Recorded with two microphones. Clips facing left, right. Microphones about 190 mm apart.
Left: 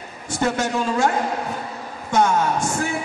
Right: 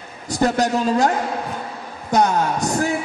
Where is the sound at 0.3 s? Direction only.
40° right (ahead or behind).